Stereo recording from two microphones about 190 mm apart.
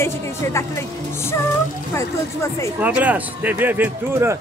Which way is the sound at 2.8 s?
10° right (ahead or behind).